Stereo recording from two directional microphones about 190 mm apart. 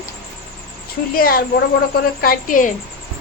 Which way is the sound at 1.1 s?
50° left (ahead or behind).